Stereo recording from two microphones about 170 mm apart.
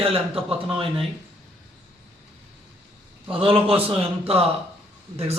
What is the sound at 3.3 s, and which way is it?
A man's voice, 30° right (ahead or behind).